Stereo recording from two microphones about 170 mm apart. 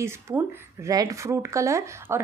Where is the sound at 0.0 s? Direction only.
15° right (ahead or behind).